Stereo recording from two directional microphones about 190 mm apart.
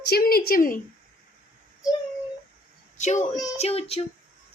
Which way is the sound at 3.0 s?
40° left (ahead or behind).